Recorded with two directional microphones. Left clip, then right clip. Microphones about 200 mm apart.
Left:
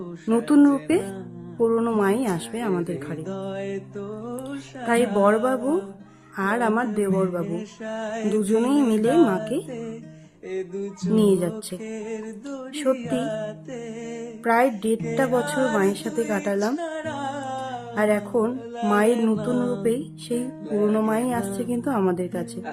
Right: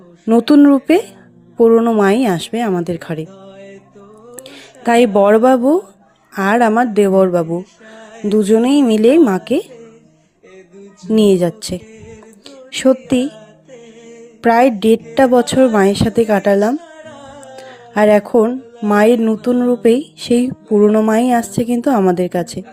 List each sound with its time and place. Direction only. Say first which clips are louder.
0.3 s a woman's voice: right 9 dB; 30° right (ahead or behind)
3.2 s music: left 6 dB; 50° left (ahead or behind)
4.9 s a woman's voice: right 9 dB; 35° right (ahead or behind)
7.6 s music: left 5 dB; 50° left (ahead or behind)
8.3 s a woman's voice: right 10 dB; 30° right (ahead or behind)
11.1 s a woman's voice: right 9 dB; 30° right (ahead or behind)
12.7 s a woman's voice: right 10 dB; 30° right (ahead or behind)
14.4 s a woman's voice: right 10 dB; 35° right (ahead or behind)
16.8 s music: left 6 dB; 55° left (ahead or behind)
17.9 s a woman's voice: right 12 dB; 35° right (ahead or behind)
20.8 s speech: right 10 dB; 20° right (ahead or behind)
21.1 s a woman's voice: right 11 dB; 35° right (ahead or behind)